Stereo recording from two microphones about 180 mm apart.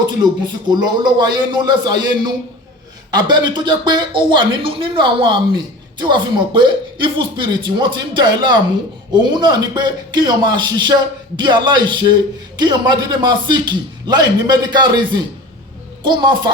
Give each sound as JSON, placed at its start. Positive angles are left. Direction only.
{"t": 0.2, "sound": "speech", "side_deg": -25}